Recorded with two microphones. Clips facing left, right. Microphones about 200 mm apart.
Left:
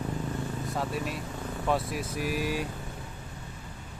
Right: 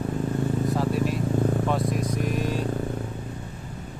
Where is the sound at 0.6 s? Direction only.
Centre (ahead or behind).